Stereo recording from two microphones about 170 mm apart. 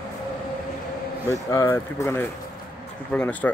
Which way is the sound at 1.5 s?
15° left (ahead or behind).